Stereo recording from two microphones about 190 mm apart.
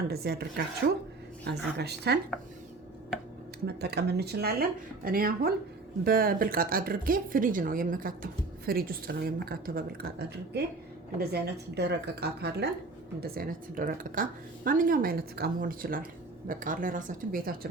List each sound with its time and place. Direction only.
0.1 s speech: 55° right (ahead or behind)
3.7 s speech: 60° right (ahead or behind)